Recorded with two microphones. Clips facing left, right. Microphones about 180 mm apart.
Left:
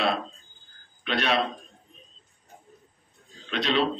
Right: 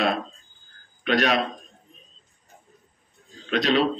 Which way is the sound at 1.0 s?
45° right (ahead or behind).